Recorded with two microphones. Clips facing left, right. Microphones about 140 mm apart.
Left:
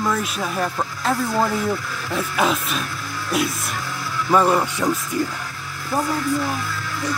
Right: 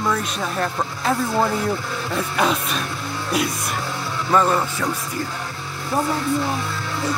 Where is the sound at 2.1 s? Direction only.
Centre (ahead or behind).